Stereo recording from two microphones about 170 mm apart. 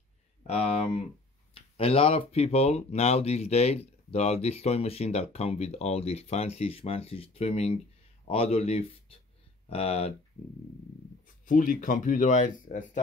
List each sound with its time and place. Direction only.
0.5 s speech: 35° left (ahead or behind)
11.4 s speech: 50° left (ahead or behind)